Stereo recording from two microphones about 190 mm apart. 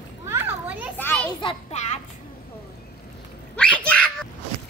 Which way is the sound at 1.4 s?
30° left (ahead or behind).